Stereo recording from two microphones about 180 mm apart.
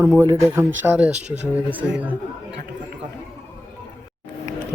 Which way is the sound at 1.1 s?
40° right (ahead or behind).